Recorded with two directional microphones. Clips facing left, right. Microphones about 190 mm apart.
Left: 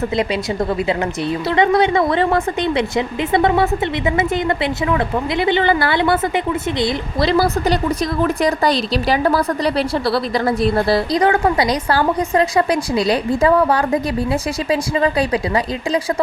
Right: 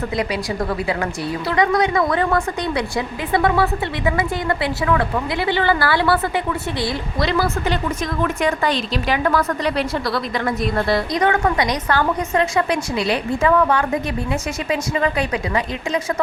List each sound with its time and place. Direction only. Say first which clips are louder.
0.2 s a woman's voice: left 3 dB; 25° left (ahead or behind)
7.2 s a woman's voice: left 4 dB; 35° left (ahead or behind)